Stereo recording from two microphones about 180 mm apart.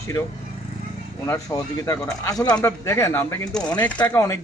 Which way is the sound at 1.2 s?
15° left (ahead or behind).